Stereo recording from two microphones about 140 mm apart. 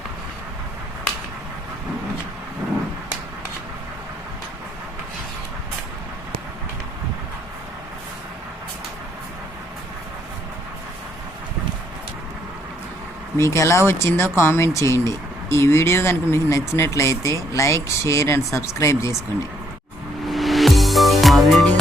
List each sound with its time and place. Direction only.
13.4 s speech: 20° left (ahead or behind)
20.2 s music: centre (ahead or behind)